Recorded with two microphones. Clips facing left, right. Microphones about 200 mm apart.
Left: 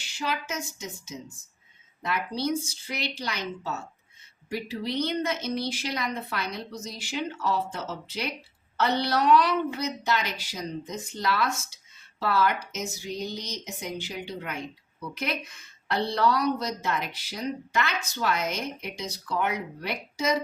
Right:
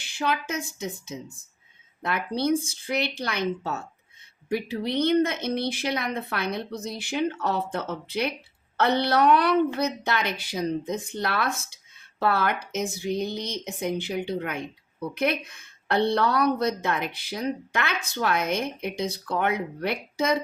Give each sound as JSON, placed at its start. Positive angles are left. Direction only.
{"t": 0.0, "sound": "a woman's voice", "side_deg": -55}